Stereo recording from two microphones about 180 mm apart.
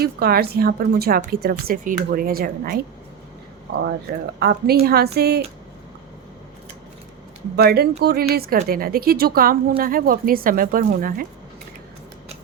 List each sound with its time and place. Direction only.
0.0 s speech: 60° right (ahead or behind)
4.4 s speech: 60° right (ahead or behind)
7.5 s speech: 60° right (ahead or behind)